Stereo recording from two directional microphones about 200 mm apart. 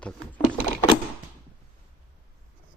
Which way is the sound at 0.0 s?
5° left (ahead or behind).